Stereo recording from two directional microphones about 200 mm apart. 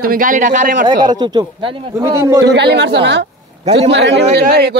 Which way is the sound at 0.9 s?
20° right (ahead or behind).